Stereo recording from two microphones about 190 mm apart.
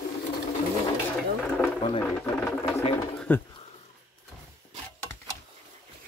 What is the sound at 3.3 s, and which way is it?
Speech, 10° left (ahead or behind).